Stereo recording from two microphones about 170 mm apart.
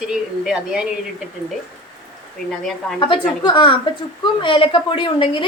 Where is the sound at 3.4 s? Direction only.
30° left (ahead or behind).